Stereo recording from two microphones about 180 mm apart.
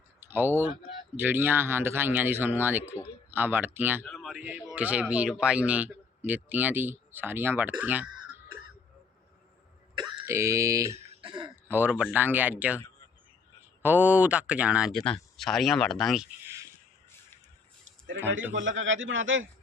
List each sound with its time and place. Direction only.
0.2 s speech: 10° right (ahead or behind)
4.0 s speech: centre (ahead or behind)
10.0 s throat clearing: 20° right (ahead or behind)
11.7 s speech: 10° right (ahead or behind)
13.8 s speech: 10° right (ahead or behind)
17.8 s a sound: 90° right
18.5 s a man's voice: 90° right